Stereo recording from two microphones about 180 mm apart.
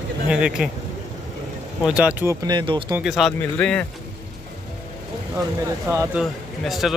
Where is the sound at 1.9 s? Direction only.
10° right (ahead or behind); by 2.9 s 25° right (ahead or behind).